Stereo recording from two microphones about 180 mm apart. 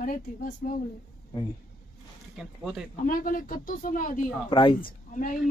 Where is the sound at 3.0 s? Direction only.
50° left (ahead or behind).